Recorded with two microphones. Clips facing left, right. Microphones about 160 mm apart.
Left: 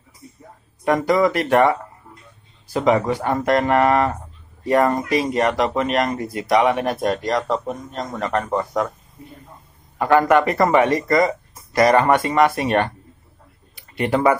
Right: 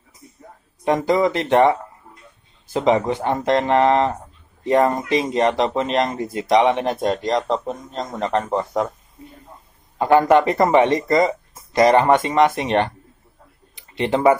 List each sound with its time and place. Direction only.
0.8 s speech: 20° right (ahead or behind)
9.9 s speech: 25° right (ahead or behind)